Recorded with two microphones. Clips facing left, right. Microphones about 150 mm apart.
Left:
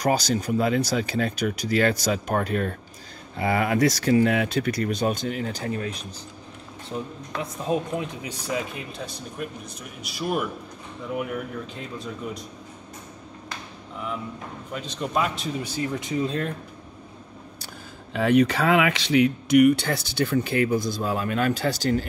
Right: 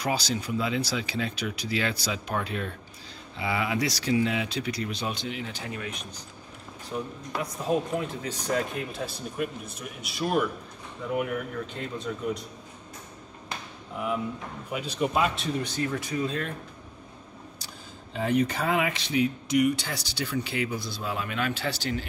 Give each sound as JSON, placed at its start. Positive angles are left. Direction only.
{"t": 0.0, "sound": "speech", "side_deg": 45}
{"t": 7.3, "sound": "speech", "side_deg": 20}
{"t": 8.5, "sound": "speech", "side_deg": 5}
{"t": 11.7, "sound": "speech", "side_deg": 0}
{"t": 14.7, "sound": "speech", "side_deg": -10}
{"t": 15.7, "sound": "speech", "side_deg": 20}
{"t": 16.3, "sound": "speech", "side_deg": 35}
{"t": 18.1, "sound": "speech", "side_deg": 75}